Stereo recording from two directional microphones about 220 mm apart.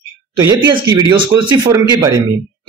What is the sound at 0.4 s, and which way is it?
A man's voice, 15° right (ahead or behind).